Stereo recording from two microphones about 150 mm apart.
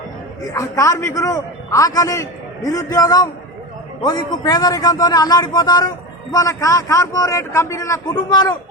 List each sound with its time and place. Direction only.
0.5 s speech: 20° left (ahead or behind)